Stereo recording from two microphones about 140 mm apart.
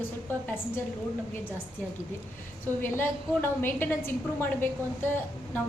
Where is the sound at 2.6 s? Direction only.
15° left (ahead or behind).